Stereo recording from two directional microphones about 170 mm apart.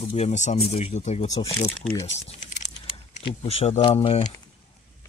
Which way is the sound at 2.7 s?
30° left (ahead or behind).